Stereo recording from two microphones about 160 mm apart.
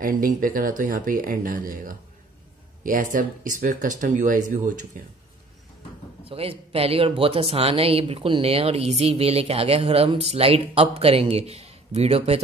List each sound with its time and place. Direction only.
0.0 s speech: 60° right (ahead or behind)
6.2 s speech: 35° right (ahead or behind)